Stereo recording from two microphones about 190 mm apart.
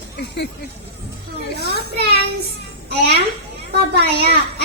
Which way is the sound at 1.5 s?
60° right (ahead or behind).